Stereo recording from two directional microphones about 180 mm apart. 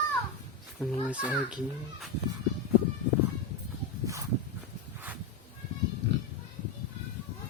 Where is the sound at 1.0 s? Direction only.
5° right (ahead or behind).